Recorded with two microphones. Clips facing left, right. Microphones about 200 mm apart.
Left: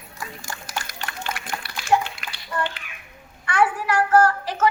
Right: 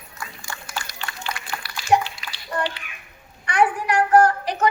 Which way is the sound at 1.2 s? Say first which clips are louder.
Left 1 dB; 50° left (ahead or behind).